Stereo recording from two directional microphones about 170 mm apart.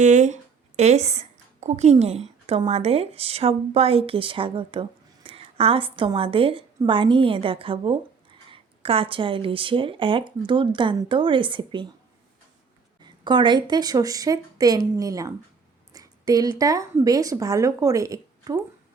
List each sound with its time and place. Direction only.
0.0 s a woman's voice: 45° right (ahead or behind); by 11.9 s 30° right (ahead or behind)
13.0 s a woman's voice: 25° right (ahead or behind)